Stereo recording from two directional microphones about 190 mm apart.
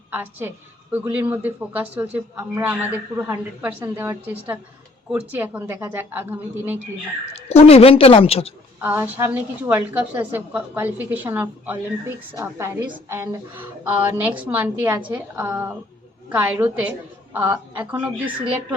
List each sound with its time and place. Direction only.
0.1 s a woman's voice: 10° right (ahead or behind)
7.3 s a woman's voice: 30° left (ahead or behind)
8.8 s a woman's voice: 10° right (ahead or behind)